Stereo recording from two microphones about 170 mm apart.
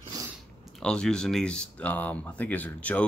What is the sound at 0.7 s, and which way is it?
Speech, 5° left (ahead or behind).